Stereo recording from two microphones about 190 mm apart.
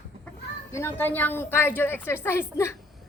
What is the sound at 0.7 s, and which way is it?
Speech, 10° left (ahead or behind).